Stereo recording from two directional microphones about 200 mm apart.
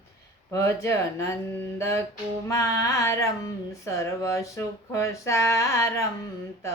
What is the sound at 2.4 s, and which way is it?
Mantra, 15° left (ahead or behind).